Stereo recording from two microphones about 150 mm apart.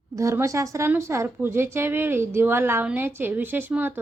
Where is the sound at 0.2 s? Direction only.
20° right (ahead or behind).